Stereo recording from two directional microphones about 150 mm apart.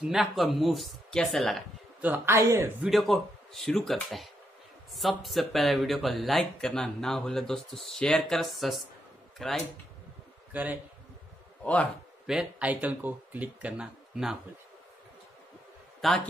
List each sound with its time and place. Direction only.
0.0 s speech: centre (ahead or behind)
2.0 s speech: 10° right (ahead or behind)
2.8 s speech: centre (ahead or behind)
10.5 s speech: 10° right (ahead or behind)
11.6 s a man's voice: 10° left (ahead or behind)
12.3 s speech: 5° right (ahead or behind)
16.0 s speech: centre (ahead or behind)